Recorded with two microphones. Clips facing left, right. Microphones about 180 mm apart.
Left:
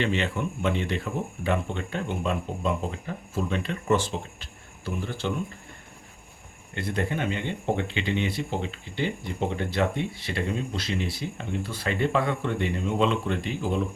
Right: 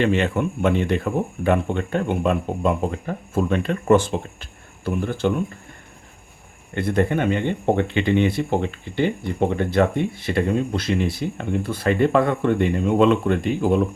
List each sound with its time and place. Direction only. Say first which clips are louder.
0.0 s speech: right 7 dB; 50° right (ahead or behind)
6.7 s speech: right 8 dB; 55° right (ahead or behind)